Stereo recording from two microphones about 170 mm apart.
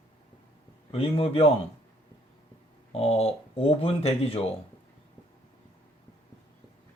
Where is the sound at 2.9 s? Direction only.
35° left (ahead or behind).